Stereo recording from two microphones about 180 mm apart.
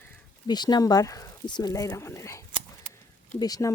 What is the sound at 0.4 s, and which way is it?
Speech, 25° left (ahead or behind).